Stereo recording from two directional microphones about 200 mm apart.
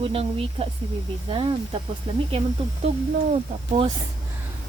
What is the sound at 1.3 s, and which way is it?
Speech, 25° right (ahead or behind).